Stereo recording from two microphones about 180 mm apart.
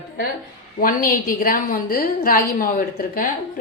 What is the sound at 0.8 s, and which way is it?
A woman's voice, 50° left (ahead or behind).